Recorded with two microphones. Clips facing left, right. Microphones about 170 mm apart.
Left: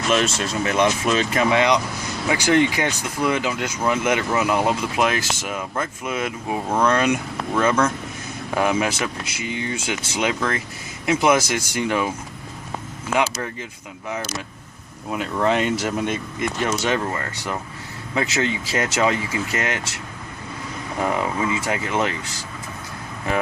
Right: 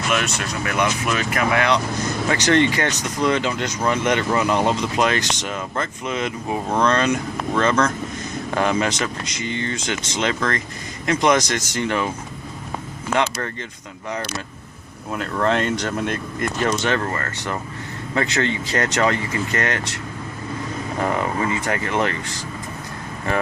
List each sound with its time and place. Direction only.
0.1 s speech: 25° left (ahead or behind); by 12.1 s 10° left (ahead or behind)
13.1 s speech: 5° left (ahead or behind)
15.1 s speech: 5° left (ahead or behind)
21.6 s speech: 10° left (ahead or behind)